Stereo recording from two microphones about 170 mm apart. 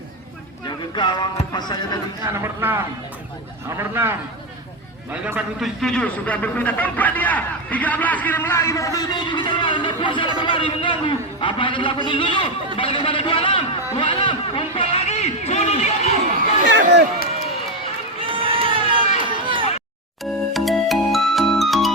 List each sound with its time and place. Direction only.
0.7 s a man's voice: 25° left (ahead or behind)
2.2 s a man's voice: 15° right (ahead or behind)
5.1 s a man's voice: 5° right (ahead or behind); by 16.1 s 40° left (ahead or behind)
16.6 s run: 90° right
18.2 s crowd: 30° right (ahead or behind)
20.5 s music: centre (ahead or behind)